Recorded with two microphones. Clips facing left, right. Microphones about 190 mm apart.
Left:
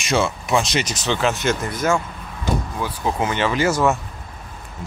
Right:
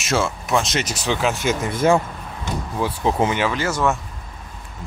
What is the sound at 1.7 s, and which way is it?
Speech, 30° right (ahead or behind).